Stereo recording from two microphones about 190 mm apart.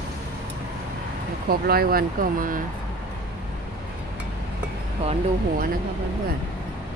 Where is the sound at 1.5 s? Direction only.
50° right (ahead or behind).